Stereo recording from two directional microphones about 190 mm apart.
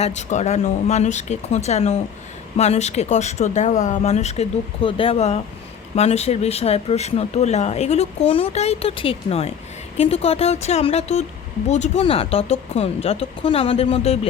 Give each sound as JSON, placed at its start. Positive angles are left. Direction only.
{"t": 0.0, "sound": "speech", "side_deg": 40}